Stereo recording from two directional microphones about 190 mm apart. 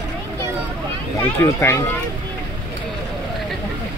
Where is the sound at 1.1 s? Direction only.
15° left (ahead or behind).